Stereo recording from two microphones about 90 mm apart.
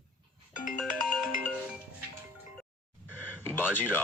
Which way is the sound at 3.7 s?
20° left (ahead or behind).